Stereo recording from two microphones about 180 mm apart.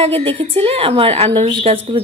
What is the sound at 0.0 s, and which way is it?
A woman's voice, 35° right (ahead or behind).